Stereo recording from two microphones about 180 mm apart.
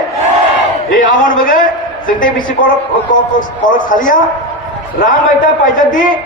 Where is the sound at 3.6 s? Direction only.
45° left (ahead or behind).